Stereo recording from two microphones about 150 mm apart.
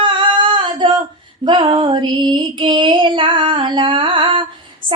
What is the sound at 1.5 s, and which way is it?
Female singing, 35° right (ahead or behind).